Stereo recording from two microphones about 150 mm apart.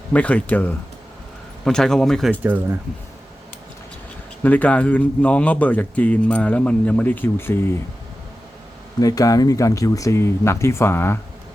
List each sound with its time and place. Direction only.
0.1 s speech: 10° left (ahead or behind)
2.4 s speech: 10° right (ahead or behind)
4.4 s speech: 10° left (ahead or behind)
9.0 s speech: 25° left (ahead or behind)